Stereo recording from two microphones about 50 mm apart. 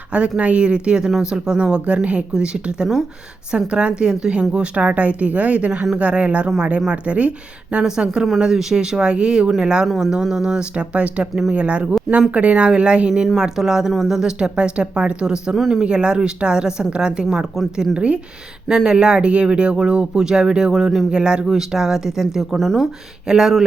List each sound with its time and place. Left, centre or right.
0.1 s a woman's voice: right
13.3 s a woman's voice: centre